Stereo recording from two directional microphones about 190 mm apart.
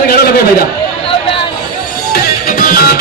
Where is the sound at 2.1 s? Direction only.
50° left (ahead or behind).